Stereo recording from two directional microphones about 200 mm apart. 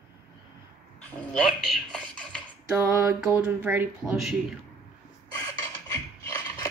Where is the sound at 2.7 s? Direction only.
10° right (ahead or behind).